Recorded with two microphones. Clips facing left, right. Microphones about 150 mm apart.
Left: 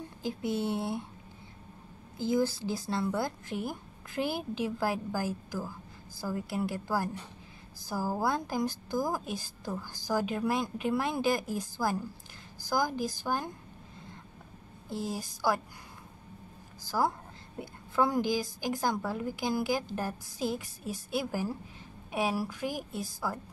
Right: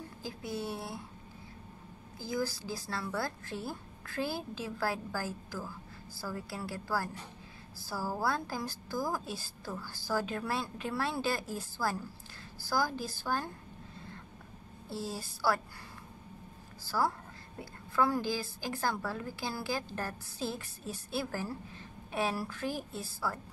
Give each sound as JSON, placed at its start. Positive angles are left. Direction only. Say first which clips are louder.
{"t": 0.2, "sound": "speech", "louder": "left 7 dB", "side_deg": 25}
{"t": 2.1, "sound": "a woman's voice", "louder": "left 7 dB", "side_deg": 25}
{"t": 14.9, "sound": "a woman's voice", "louder": "left 3 dB", "side_deg": 15}
{"t": 16.8, "sound": "a woman's voice", "louder": "left 2 dB", "side_deg": 15}